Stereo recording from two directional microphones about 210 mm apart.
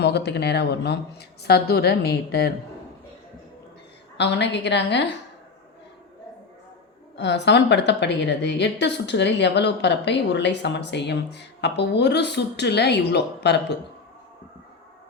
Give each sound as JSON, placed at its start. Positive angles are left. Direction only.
{"t": 0.0, "sound": "a woman's voice", "side_deg": 50}
{"t": 4.2, "sound": "a woman's voice", "side_deg": 55}
{"t": 7.2, "sound": "a woman's voice", "side_deg": 55}